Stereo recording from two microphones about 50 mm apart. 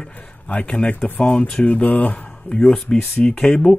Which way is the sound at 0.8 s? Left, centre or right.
Left.